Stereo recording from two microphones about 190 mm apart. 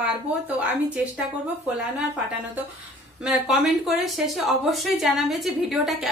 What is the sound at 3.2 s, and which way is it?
Speech, centre (ahead or behind).